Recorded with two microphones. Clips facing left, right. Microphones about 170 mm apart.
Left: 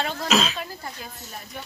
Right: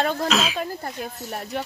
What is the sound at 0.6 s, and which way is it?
Speech, 45° right (ahead or behind).